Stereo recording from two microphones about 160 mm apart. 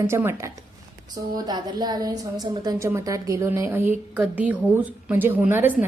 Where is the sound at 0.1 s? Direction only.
15° right (ahead or behind).